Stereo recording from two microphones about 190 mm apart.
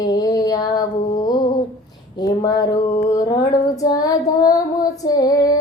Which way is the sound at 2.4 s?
20° left (ahead or behind).